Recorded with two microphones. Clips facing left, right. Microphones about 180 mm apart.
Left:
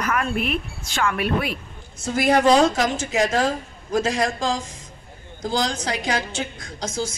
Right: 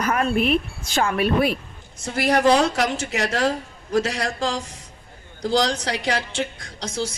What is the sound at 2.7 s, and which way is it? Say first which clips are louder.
A man's voice: left 1 dB; 70° right (ahead or behind).